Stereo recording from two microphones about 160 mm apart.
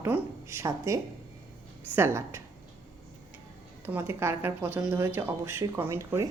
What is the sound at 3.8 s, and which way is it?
Speech, 15° right (ahead or behind).